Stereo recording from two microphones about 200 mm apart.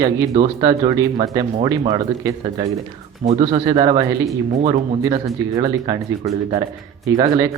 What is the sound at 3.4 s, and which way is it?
Speech, 20° right (ahead or behind).